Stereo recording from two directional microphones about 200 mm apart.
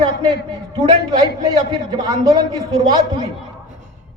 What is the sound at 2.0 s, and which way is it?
A woman's voice, 20° right (ahead or behind).